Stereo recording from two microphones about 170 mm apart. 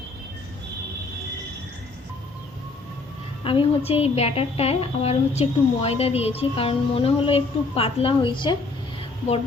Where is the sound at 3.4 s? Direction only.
30° left (ahead or behind).